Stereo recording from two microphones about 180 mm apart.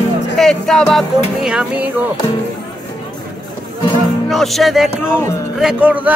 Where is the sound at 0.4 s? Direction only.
Centre (ahead or behind).